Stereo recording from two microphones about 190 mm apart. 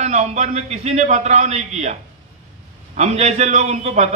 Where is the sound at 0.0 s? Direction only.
35° right (ahead or behind).